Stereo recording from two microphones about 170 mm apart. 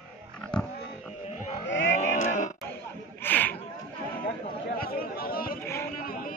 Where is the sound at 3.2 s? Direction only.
10° left (ahead or behind).